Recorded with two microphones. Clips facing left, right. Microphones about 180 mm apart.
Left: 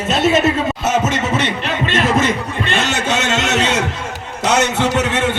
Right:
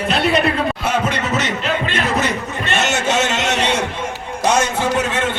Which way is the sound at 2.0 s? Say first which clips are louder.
Left 4 dB; 90° left.